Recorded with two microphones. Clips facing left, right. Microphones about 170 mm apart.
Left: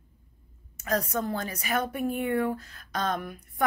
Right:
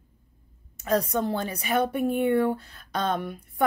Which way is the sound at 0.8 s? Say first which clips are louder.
Right 4 dB; 30° right (ahead or behind).